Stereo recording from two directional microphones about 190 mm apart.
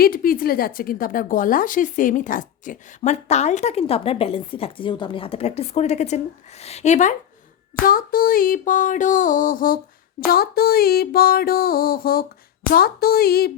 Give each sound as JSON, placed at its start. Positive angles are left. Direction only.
{"t": 0.0, "sound": "a woman's voice", "side_deg": 50}
{"t": 7.9, "sound": "music", "side_deg": 50}